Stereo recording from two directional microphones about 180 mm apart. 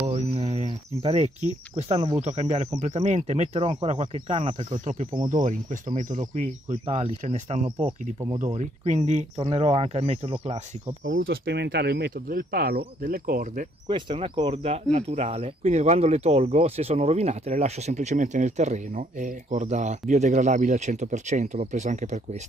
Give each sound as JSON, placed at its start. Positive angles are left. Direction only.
{"t": 0.0, "sound": "speech", "side_deg": -35}
{"t": 5.3, "sound": "speech", "side_deg": -45}
{"t": 11.2, "sound": "speech", "side_deg": -70}
{"t": 13.8, "sound": "speech", "side_deg": -25}